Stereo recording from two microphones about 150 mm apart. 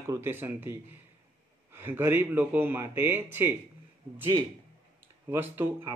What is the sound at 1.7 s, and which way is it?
Speech, 15° right (ahead or behind).